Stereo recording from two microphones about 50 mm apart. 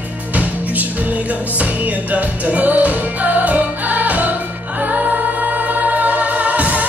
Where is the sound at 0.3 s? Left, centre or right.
Right.